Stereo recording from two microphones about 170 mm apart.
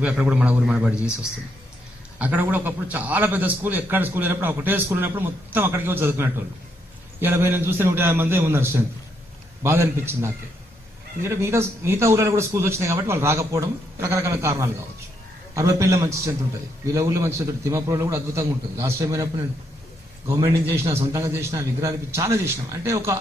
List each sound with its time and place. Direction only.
0.0 s a man's voice: 5° right (ahead or behind)
2.1 s a man's voice: 10° right (ahead or behind)